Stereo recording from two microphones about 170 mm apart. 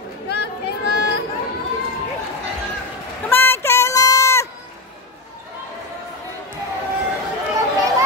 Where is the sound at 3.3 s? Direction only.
15° left (ahead or behind).